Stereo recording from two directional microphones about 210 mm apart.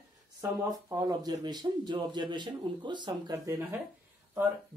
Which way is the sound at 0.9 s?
15° right (ahead or behind).